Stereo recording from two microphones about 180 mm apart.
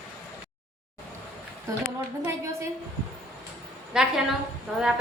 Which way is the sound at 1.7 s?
15° right (ahead or behind).